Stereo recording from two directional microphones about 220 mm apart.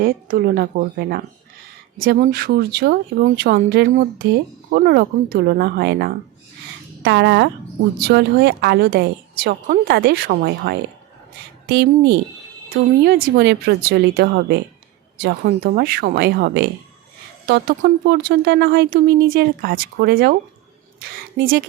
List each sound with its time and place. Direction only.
0.0 s a woman's voice: 40° right (ahead or behind)